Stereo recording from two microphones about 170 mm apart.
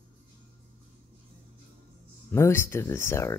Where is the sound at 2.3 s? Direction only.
15° left (ahead or behind).